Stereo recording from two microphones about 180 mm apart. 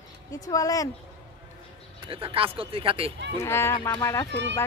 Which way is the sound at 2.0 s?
30° right (ahead or behind).